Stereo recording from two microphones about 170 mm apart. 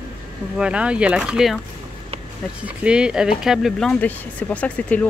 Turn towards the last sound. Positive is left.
turn(degrees=10)  # may be behind; listen again after turning